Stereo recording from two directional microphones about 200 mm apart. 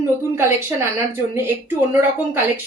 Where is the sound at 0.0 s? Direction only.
10° right (ahead or behind).